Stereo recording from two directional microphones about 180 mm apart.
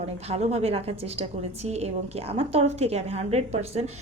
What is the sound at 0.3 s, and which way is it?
A woman's voice, 35° right (ahead or behind).